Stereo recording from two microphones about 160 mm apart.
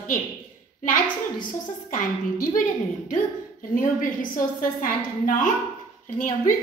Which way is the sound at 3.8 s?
60° left (ahead or behind).